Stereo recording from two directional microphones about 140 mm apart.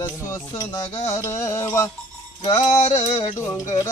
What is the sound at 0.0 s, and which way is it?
Music, 20° left (ahead or behind).